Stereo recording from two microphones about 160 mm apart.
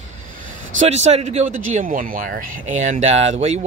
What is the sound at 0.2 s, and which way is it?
Speech, 50° right (ahead or behind).